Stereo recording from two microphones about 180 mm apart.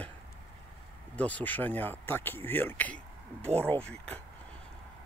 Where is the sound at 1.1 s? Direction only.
10° left (ahead or behind).